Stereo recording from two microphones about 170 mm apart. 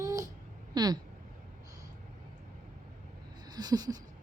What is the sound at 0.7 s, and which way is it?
Speech, 25° right (ahead or behind).